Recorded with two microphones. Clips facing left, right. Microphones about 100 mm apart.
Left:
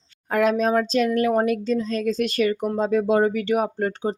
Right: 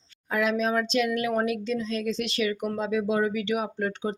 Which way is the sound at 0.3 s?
45° left (ahead or behind).